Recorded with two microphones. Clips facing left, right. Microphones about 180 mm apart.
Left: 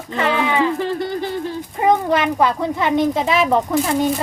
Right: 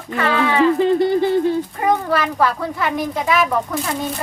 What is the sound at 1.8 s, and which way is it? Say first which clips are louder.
Speech: left 5 dB; 20° left (ahead or behind).